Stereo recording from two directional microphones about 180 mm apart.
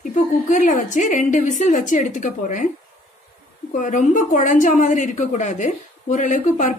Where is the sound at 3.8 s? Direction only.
45° left (ahead or behind).